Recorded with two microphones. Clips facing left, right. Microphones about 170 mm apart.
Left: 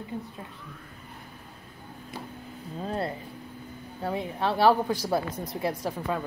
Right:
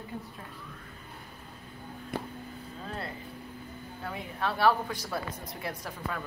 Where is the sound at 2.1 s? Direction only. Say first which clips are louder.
Right 5 dB; 55° right (ahead or behind).